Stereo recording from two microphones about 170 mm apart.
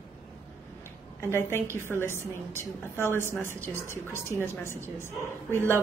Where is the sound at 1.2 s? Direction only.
15° left (ahead or behind).